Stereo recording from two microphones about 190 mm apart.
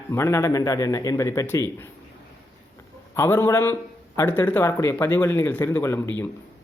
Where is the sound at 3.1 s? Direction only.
15° left (ahead or behind).